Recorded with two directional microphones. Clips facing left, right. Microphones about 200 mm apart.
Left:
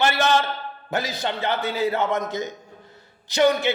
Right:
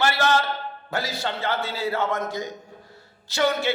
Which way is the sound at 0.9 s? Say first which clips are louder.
Left 2 dB; 20° left (ahead or behind).